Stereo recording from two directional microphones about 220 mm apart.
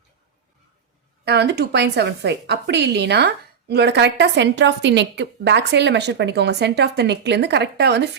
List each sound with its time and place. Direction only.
1.2 s a woman's voice: 50° right (ahead or behind)